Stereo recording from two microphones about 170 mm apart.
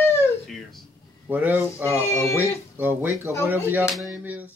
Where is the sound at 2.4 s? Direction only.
10° right (ahead or behind).